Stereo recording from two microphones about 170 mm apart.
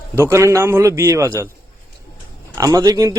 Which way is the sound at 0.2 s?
15° right (ahead or behind).